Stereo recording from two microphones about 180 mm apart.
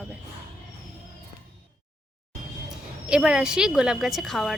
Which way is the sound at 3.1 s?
5° right (ahead or behind).